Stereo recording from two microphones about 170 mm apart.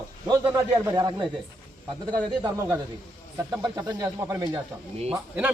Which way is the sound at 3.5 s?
25° right (ahead or behind).